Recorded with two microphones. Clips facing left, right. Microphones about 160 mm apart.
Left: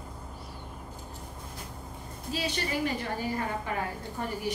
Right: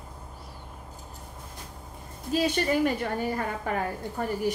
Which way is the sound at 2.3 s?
50° right (ahead or behind).